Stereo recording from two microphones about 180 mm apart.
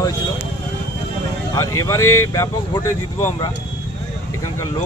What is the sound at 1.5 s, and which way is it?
Speech, 20° left (ahead or behind).